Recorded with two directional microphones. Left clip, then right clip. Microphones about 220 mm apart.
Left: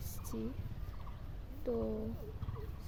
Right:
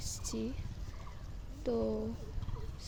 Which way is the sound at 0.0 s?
35° right (ahead or behind).